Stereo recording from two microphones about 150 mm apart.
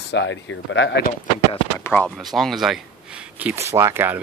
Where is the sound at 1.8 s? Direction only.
10° left (ahead or behind).